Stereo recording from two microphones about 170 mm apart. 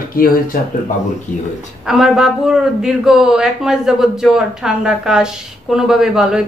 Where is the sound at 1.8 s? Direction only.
5° right (ahead or behind).